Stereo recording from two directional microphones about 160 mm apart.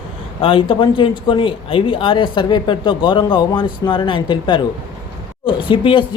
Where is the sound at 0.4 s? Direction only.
35° left (ahead or behind).